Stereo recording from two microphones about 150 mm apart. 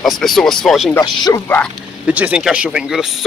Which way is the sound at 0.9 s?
25° left (ahead or behind).